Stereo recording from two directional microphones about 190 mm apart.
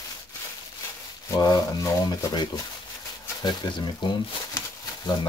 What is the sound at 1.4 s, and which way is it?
Speech, 20° left (ahead or behind).